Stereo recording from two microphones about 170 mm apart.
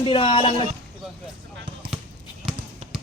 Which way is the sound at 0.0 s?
30° left (ahead or behind).